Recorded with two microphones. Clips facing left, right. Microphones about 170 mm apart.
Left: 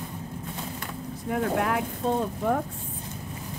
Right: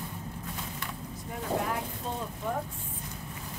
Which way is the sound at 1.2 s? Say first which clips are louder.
Left 6 dB; 75° left (ahead or behind).